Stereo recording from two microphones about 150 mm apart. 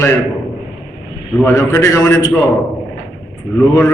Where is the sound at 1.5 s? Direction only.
20° left (ahead or behind).